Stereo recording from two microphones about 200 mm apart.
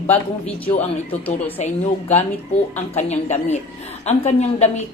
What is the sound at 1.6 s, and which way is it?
A woman's voice, 35° left (ahead or behind).